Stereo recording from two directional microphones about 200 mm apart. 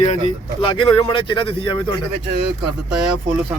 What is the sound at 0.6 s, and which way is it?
Speech, 25° left (ahead or behind).